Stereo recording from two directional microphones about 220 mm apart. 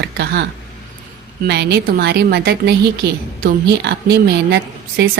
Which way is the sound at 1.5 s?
50° right (ahead or behind).